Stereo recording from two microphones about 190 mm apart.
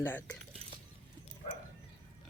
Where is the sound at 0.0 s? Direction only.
10° left (ahead or behind).